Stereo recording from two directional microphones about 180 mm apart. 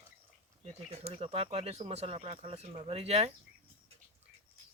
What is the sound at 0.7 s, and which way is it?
Speech, 30° right (ahead or behind).